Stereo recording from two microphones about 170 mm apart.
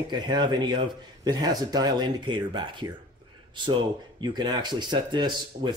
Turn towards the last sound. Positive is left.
turn(degrees=-25)  # may be behind; listen again after turning